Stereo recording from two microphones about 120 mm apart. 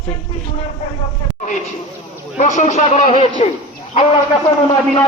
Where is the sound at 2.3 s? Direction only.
75° left (ahead or behind).